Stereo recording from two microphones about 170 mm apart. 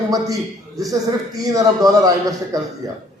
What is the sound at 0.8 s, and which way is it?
A man's voice, 20° right (ahead or behind).